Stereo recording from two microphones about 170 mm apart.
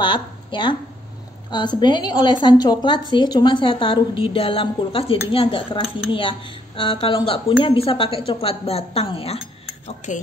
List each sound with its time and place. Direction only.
0.0 s a woman's voice: 30° left (ahead or behind)